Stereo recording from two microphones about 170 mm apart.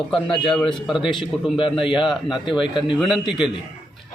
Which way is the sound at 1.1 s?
30° left (ahead or behind).